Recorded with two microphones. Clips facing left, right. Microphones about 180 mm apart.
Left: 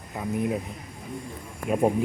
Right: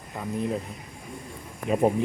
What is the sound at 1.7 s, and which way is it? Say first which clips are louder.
Speech: even; centre (ahead or behind).